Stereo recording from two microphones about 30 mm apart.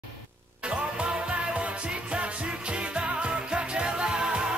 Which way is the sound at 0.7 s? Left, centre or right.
Right.